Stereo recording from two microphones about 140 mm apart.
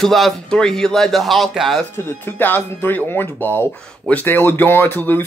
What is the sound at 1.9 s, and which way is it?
Speech, 15° left (ahead or behind).